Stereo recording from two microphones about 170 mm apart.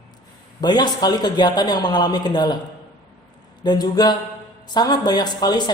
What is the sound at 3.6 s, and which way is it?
Speech, 25° left (ahead or behind).